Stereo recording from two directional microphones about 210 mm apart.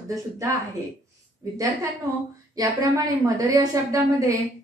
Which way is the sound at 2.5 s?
15° right (ahead or behind).